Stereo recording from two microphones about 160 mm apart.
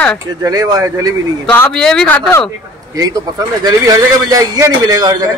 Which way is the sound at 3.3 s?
25° right (ahead or behind).